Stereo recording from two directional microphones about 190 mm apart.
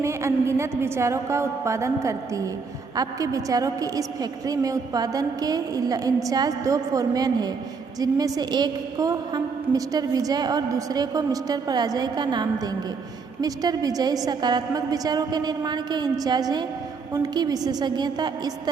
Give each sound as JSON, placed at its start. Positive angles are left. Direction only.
{"t": 0.0, "sound": "a woman's voice", "side_deg": -15}